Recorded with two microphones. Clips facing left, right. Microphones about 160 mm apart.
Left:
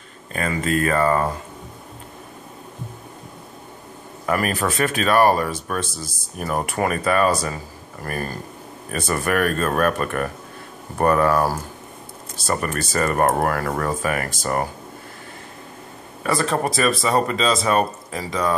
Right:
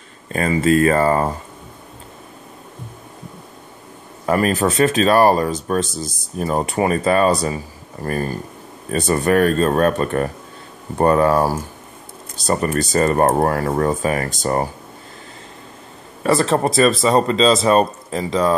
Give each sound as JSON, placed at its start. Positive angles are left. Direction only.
{"t": 0.3, "sound": "speech", "side_deg": -35}
{"t": 4.3, "sound": "speech", "side_deg": -30}
{"t": 12.9, "sound": "speech", "side_deg": -30}
{"t": 16.2, "sound": "speech", "side_deg": -25}